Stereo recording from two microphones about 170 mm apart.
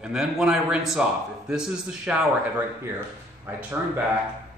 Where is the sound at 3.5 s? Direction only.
15° right (ahead or behind).